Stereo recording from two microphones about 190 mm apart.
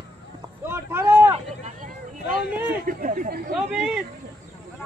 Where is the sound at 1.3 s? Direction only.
35° right (ahead or behind).